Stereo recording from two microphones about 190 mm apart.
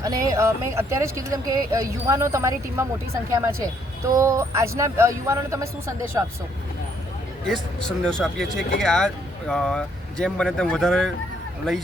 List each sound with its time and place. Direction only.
0.0 s speech: 15° right (ahead or behind)
7.4 s speech: 5° left (ahead or behind)